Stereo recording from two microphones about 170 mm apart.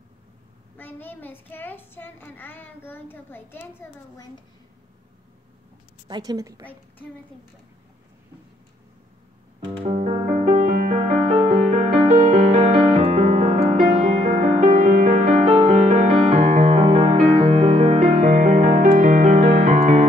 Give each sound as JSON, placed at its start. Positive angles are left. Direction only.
{"t": 0.7, "sound": "a woman's voice", "side_deg": 10}
{"t": 6.0, "sound": "a woman's voice", "side_deg": -25}
{"t": 9.8, "sound": "music", "side_deg": -35}
{"t": 10.7, "sound": "music", "side_deg": -50}
{"t": 11.0, "sound": "music", "side_deg": -35}